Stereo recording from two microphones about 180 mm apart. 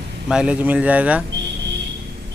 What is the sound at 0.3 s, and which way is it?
Speech, 5° right (ahead or behind).